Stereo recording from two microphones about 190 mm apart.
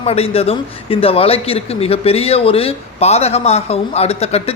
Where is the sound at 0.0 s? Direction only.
30° left (ahead or behind).